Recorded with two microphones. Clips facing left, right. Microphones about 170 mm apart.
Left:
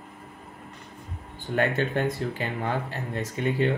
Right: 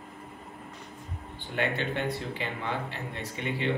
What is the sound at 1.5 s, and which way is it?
Speech, 45° left (ahead or behind).